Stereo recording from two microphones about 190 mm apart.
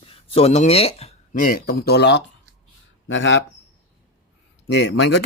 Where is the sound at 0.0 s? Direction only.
30° left (ahead or behind); by 2.2 s 60° left (ahead or behind).